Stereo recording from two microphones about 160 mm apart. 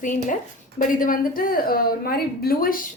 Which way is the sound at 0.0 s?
55° left (ahead or behind).